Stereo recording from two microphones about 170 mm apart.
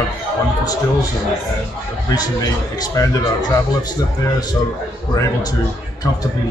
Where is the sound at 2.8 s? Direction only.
25° left (ahead or behind).